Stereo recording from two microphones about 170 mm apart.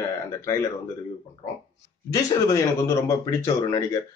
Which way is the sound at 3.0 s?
20° left (ahead or behind).